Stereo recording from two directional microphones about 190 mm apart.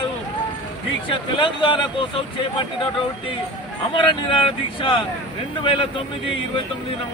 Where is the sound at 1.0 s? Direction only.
25° left (ahead or behind).